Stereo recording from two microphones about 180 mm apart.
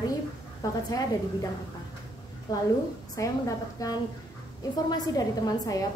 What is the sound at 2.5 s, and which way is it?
A woman's voice, 20° left (ahead or behind).